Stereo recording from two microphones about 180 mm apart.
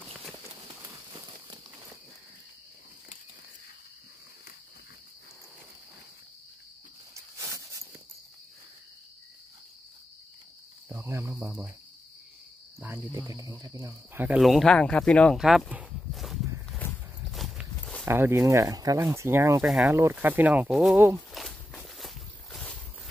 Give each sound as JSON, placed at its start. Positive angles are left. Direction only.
{"t": 7.2, "sound": "cricket", "side_deg": -15}
{"t": 10.9, "sound": "cricket", "side_deg": -15}
{"t": 12.8, "sound": "speech", "side_deg": -15}
{"t": 17.3, "sound": "walk", "side_deg": 0}
{"t": 18.0, "sound": "speech", "side_deg": -15}
{"t": 21.3, "sound": "walk", "side_deg": 0}